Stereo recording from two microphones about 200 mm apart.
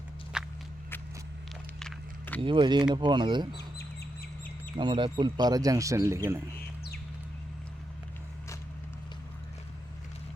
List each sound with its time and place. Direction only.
0.3 s walk: 5° right (ahead or behind)
1.8 s walk: 10° left (ahead or behind)
2.4 s speech: 25° right (ahead or behind)
4.8 s speech: 25° right (ahead or behind)